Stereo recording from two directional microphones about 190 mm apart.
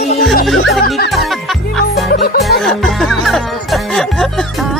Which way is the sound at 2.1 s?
50° left (ahead or behind).